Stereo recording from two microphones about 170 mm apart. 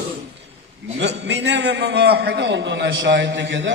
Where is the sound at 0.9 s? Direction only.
90° right.